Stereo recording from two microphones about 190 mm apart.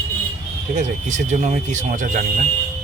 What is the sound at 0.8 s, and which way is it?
Speech, 40° right (ahead or behind).